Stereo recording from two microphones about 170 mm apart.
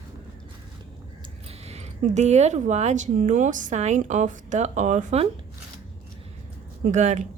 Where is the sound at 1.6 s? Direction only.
40° right (ahead or behind).